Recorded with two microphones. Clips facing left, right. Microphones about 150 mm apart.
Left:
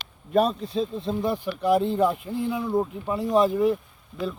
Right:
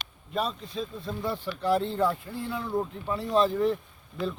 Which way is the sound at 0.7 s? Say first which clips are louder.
Left 8 dB; 25° left (ahead or behind).